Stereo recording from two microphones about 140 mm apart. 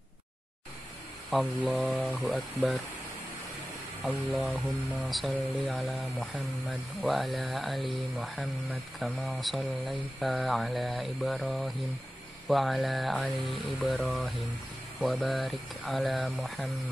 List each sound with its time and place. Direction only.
1.3 s speech: centre (ahead or behind)
4.0 s speech: centre (ahead or behind)